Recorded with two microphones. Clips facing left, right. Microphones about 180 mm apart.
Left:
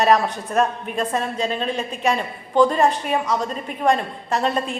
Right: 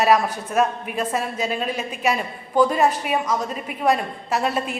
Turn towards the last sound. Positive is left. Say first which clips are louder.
# left 1 dB
turn(degrees=-5)  # may be behind; listen again after turning